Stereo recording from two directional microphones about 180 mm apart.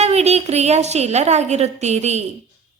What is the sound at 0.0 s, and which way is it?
A woman's voice, 35° right (ahead or behind).